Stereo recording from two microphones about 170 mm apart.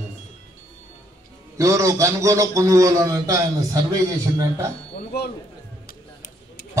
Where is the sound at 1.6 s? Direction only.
20° right (ahead or behind).